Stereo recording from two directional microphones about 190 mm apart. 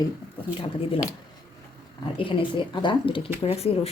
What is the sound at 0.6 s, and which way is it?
Speech, 30° left (ahead or behind).